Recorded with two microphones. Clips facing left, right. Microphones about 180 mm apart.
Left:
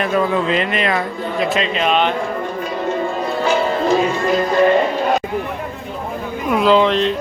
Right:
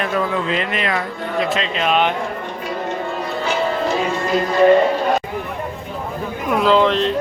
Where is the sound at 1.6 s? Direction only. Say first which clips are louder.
Left 2 dB; centre (ahead or behind).